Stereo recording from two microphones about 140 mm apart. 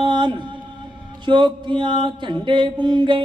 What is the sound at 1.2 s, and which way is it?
Speech, 35° right (ahead or behind).